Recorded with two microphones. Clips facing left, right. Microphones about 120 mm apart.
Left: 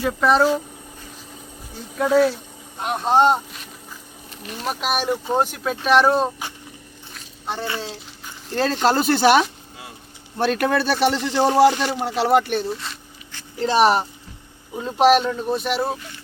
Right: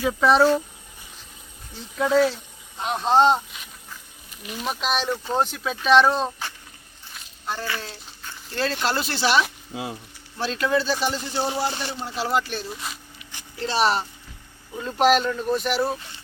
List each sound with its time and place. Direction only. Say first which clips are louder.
0.0 s speech: even; centre (ahead or behind)
1.7 s speech: left 2 dB; 5° left (ahead or behind)
4.5 s speech: left 2 dB; 5° left (ahead or behind)
7.4 s a child's voice: left 3 dB; 25° left (ahead or behind)
8.5 s speech: left 6 dB; 45° left (ahead or behind); by 11.9 s 90° left
11.9 s speech: left 7 dB; 70° left (ahead or behind)
13.6 s a child's voice: left 5 dB; 20° left (ahead or behind)